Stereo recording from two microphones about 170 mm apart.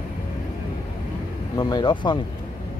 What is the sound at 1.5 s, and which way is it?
Speech, 25° left (ahead or behind).